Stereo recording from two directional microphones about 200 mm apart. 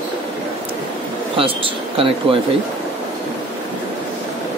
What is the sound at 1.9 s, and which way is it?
Speech, 30° right (ahead or behind).